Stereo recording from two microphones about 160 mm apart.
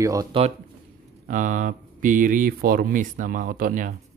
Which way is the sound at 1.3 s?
55° right (ahead or behind).